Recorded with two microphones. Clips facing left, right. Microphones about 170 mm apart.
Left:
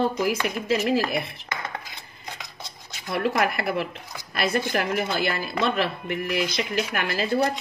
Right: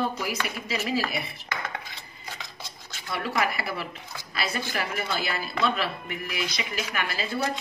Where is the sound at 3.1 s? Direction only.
50° left (ahead or behind).